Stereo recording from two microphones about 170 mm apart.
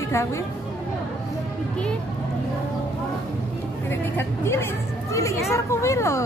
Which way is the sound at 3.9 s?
15° left (ahead or behind).